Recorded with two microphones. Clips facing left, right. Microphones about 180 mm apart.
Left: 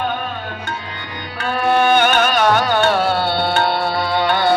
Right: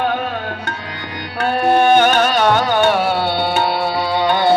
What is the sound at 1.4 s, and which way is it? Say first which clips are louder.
Music: right 2 dB; 55° right (ahead or behind).